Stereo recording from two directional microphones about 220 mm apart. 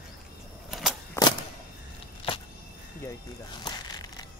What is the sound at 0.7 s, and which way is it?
Vehicle, centre (ahead or behind).